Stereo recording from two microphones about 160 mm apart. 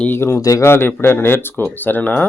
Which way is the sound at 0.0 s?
15° left (ahead or behind).